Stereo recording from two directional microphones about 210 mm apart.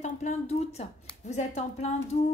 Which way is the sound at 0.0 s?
35° left (ahead or behind).